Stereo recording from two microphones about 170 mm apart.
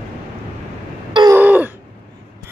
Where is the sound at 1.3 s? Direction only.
10° right (ahead or behind).